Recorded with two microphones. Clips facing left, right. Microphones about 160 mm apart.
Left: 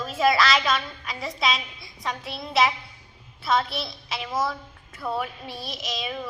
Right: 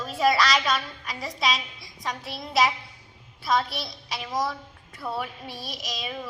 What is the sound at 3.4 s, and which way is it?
Speech, 40° right (ahead or behind).